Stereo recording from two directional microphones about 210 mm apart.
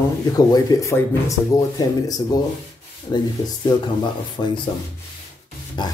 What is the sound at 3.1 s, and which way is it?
Speech, 20° left (ahead or behind).